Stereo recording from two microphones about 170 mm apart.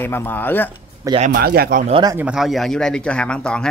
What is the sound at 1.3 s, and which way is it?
Speech, 65° right (ahead or behind).